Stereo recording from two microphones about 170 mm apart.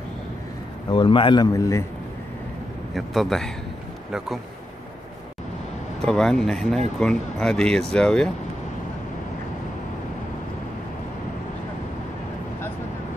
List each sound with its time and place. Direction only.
0.8 s a man's voice: 30° left (ahead or behind)
2.9 s speech: centre (ahead or behind)
6.0 s speech: 5° left (ahead or behind)